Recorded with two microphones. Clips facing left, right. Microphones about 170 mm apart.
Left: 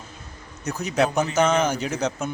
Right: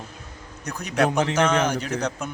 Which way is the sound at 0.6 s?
5° left (ahead or behind).